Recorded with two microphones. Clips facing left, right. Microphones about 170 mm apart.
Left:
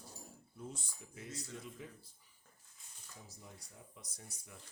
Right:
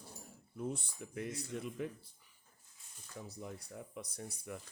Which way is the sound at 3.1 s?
65° right (ahead or behind).